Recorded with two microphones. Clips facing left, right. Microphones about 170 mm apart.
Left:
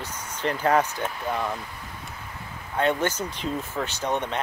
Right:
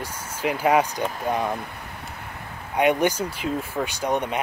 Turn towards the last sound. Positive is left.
turn(degrees=-10)  # may be behind; listen again after turning